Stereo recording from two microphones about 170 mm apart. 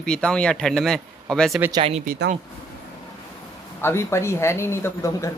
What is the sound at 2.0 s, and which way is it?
Speech, 55° right (ahead or behind).